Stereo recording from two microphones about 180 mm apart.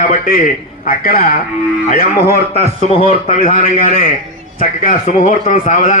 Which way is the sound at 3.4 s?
35° left (ahead or behind).